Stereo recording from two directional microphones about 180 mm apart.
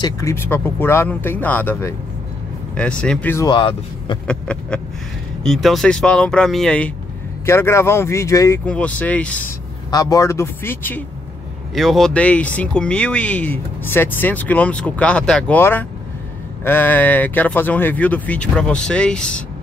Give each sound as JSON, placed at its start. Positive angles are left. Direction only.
{"t": 0.0, "sound": "speech", "side_deg": 15}
{"t": 3.4, "sound": "speech", "side_deg": 25}
{"t": 4.3, "sound": "speech", "side_deg": 5}
{"t": 9.8, "sound": "speech", "side_deg": 20}